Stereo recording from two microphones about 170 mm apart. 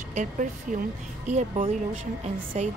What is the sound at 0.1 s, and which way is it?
Speech, 50° right (ahead or behind).